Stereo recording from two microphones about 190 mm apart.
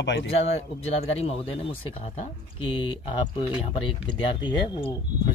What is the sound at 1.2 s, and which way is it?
Speech, 30° left (ahead or behind).